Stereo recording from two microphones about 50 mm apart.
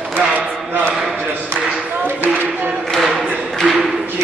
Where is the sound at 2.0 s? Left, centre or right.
Right.